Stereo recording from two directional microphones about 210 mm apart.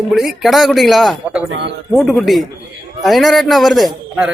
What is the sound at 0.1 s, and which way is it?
A man's voice, centre (ahead or behind).